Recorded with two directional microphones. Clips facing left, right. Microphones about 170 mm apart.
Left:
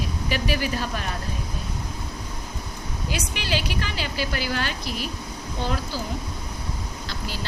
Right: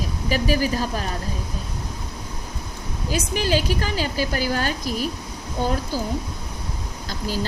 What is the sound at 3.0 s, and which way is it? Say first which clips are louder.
A woman's voice: right 7 dB; 45° right (ahead or behind).